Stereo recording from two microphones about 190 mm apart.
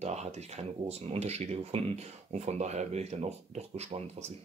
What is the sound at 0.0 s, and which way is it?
Speech, 35° right (ahead or behind).